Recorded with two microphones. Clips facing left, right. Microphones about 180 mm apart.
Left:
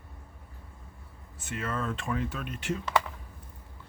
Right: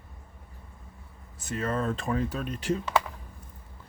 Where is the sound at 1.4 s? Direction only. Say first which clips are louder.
Right 4 dB; 40° right (ahead or behind).